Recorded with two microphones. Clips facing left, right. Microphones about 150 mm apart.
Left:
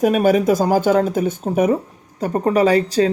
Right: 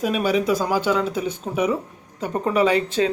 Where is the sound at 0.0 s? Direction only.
50° left (ahead or behind).